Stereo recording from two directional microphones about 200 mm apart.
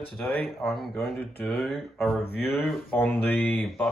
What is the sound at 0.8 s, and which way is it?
Speech, 50° left (ahead or behind).